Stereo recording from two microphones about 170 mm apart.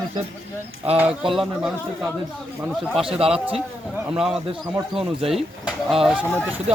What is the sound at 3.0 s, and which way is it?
Speech, 35° right (ahead or behind).